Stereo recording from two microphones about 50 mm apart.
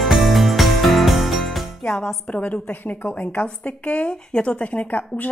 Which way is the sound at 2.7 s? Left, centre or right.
Left.